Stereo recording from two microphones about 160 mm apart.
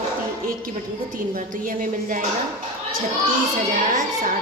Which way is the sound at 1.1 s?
55° right (ahead or behind).